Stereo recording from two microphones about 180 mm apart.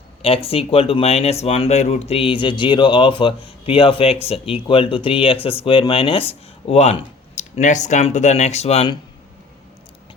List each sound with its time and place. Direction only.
0.2 s speech: 30° left (ahead or behind)